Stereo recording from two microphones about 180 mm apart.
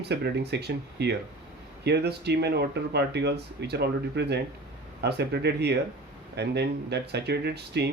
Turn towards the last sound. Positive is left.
turn(degrees=-65)  # may be behind; listen again after turning